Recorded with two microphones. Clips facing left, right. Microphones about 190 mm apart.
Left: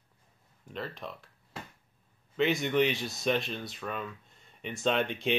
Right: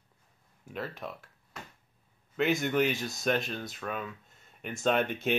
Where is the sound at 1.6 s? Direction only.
30° left (ahead or behind).